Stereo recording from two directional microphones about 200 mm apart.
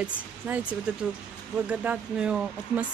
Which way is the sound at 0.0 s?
5° right (ahead or behind).